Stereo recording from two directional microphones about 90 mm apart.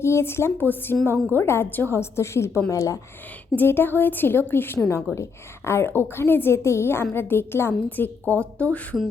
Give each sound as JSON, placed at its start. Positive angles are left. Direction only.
{"t": 0.0, "sound": "a woman's voice", "side_deg": 30}
{"t": 3.5, "sound": "a woman's voice", "side_deg": 25}
{"t": 4.8, "sound": "a woman's voice", "side_deg": 35}